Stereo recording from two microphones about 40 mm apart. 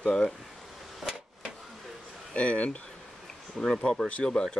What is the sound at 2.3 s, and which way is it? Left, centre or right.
Speech, left.